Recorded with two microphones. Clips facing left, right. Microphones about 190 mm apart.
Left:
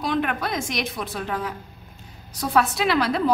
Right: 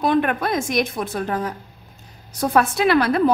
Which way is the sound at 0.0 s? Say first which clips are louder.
Right 5 dB; 50° right (ahead or behind).